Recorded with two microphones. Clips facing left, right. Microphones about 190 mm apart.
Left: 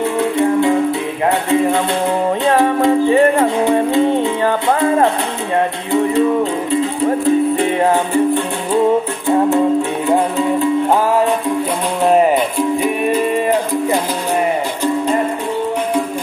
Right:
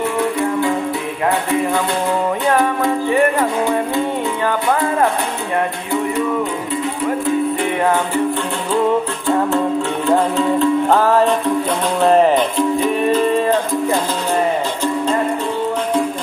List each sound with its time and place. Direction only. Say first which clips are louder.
0.2 s music: left 5 dB; 25° left (ahead or behind)
2.4 s music: left 5 dB; 25° left (ahead or behind)
6.7 s music: left 5 dB; 25° left (ahead or behind)
10.0 s music: right 2 dB; 15° left (ahead or behind)